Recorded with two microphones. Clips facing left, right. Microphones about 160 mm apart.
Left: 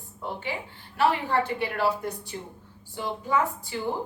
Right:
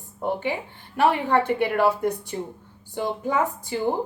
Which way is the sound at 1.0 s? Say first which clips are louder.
Right 4 dB; 55° right (ahead or behind).